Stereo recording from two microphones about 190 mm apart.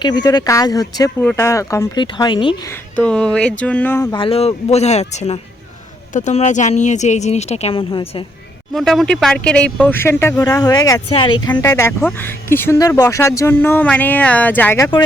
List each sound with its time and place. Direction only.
0.0 s speech: 20° left (ahead or behind)
2.6 s speech: 5° left (ahead or behind)
4.1 s speech: 30° left (ahead or behind)
8.7 s speech: centre (ahead or behind)